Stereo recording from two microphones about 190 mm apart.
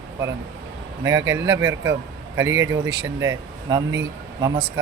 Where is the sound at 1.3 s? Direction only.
15° right (ahead or behind).